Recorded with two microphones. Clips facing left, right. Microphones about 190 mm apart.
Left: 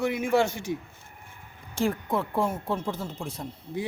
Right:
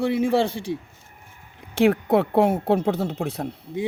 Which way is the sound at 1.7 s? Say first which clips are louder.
Right 9 dB; 65° right (ahead or behind).